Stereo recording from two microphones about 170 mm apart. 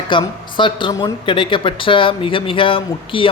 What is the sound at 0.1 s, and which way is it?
A woman's voice, 30° left (ahead or behind).